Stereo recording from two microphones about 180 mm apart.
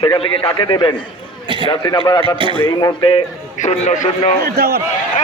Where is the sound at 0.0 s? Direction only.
25° left (ahead or behind).